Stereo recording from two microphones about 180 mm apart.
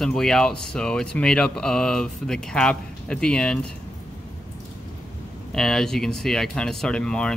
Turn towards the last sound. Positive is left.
turn(degrees=5)  # may be behind; listen again after turning